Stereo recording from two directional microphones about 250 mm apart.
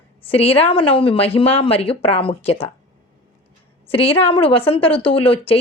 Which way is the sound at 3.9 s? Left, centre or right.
Left.